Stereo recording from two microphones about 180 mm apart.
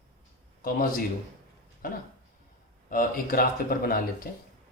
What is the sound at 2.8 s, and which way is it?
Speech, 50° left (ahead or behind).